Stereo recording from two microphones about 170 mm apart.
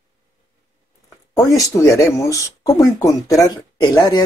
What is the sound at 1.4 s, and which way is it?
Speech, 20° left (ahead or behind).